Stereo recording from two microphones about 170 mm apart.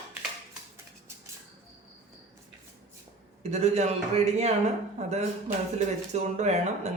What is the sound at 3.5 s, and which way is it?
A man's voice, 40° right (ahead or behind).